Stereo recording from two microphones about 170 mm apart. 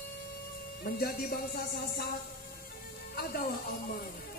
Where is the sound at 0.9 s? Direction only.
60° left (ahead or behind).